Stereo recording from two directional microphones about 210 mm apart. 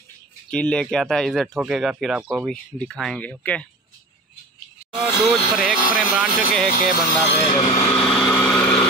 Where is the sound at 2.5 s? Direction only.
Centre (ahead or behind).